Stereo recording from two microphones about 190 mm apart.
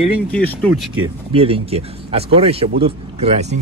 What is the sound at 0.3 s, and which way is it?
Speech, 5° left (ahead or behind).